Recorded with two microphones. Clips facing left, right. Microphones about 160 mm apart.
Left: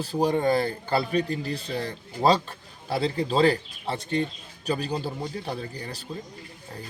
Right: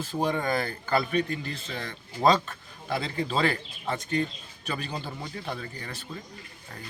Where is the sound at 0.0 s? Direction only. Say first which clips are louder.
Left 5 dB; 35° left (ahead or behind).